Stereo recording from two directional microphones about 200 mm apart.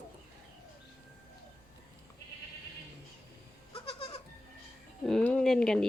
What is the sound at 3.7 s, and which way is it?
Goat, 30° left (ahead or behind).